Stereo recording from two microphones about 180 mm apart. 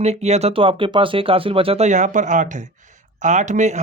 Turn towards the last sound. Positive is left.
turn(degrees=-40)  # may be behind; listen again after turning